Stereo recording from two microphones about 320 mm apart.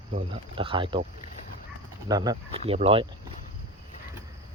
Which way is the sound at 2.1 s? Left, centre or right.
Centre.